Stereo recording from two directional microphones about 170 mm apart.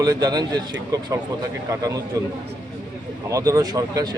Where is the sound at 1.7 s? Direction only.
20° right (ahead or behind).